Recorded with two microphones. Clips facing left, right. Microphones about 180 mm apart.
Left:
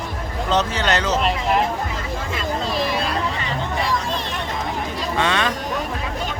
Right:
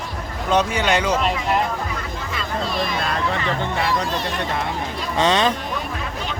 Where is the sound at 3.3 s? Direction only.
60° right (ahead or behind).